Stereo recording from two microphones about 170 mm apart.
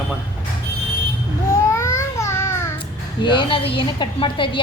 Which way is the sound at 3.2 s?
30° left (ahead or behind).